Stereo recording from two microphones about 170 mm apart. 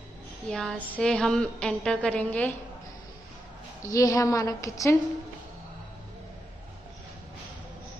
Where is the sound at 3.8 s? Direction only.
20° left (ahead or behind).